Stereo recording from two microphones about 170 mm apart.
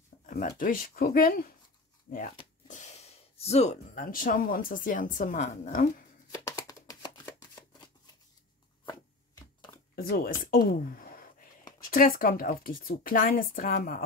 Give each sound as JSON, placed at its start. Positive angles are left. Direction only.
{"t": 0.3, "sound": "speech", "side_deg": 55}
{"t": 2.7, "sound": "speech", "side_deg": 40}
{"t": 6.3, "sound": "a sound", "side_deg": 20}
{"t": 9.9, "sound": "speech", "side_deg": 60}